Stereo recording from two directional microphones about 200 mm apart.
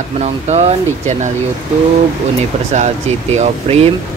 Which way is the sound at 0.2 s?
35° right (ahead or behind).